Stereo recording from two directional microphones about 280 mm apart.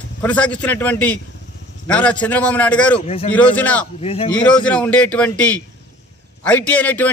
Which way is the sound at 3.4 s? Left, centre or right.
Centre.